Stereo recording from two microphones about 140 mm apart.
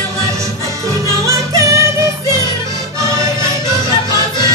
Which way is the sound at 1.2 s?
25° right (ahead or behind).